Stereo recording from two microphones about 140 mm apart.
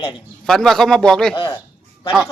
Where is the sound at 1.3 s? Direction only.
40° left (ahead or behind).